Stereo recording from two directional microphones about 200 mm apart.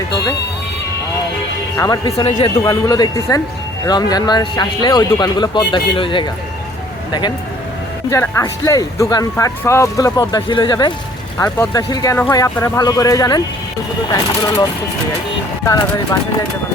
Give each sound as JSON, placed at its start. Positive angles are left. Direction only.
{"t": 1.7, "sound": "speech", "side_deg": 15}
{"t": 2.2, "sound": "speech", "side_deg": 30}
{"t": 11.3, "sound": "speech", "side_deg": 10}